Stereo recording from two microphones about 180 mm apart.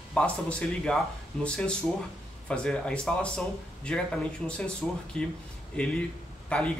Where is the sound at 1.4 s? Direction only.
5° left (ahead or behind).